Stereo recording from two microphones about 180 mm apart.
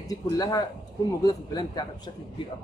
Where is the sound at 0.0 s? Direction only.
20° left (ahead or behind).